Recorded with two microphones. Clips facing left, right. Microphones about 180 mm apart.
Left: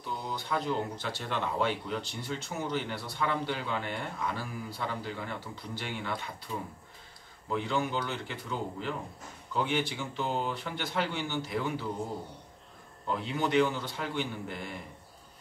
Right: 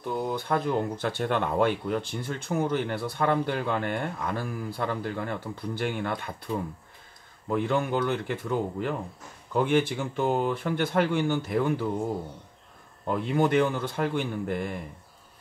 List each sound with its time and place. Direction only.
0.0 s speech: 55° right (ahead or behind)
13.0 s speech: 50° right (ahead or behind)